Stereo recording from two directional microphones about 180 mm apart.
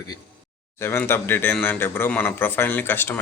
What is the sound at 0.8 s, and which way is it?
Speech, 15° left (ahead or behind).